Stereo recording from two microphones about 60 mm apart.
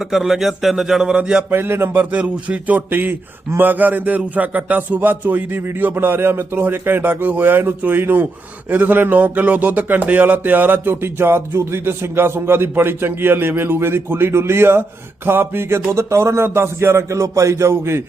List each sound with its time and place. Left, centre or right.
0.0 s speech: centre
1.5 s music: right
2.0 s a man's voice: right
4.2 s music: right